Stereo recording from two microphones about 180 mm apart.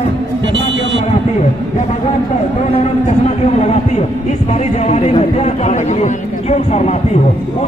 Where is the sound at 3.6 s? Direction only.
35° left (ahead or behind).